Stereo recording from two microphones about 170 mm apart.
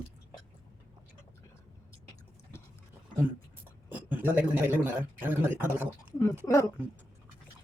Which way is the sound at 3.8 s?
10° right (ahead or behind).